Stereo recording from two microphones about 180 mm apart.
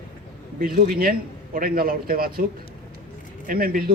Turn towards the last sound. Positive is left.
turn(degrees=-55)  # may be behind; listen again after turning